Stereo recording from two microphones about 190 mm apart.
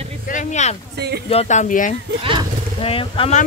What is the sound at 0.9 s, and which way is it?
Speech, 60° right (ahead or behind).